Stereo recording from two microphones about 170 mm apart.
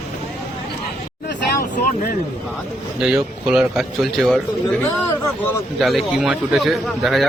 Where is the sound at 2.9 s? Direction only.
5° right (ahead or behind).